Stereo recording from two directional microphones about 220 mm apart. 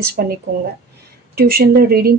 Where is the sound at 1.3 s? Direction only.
45° right (ahead or behind).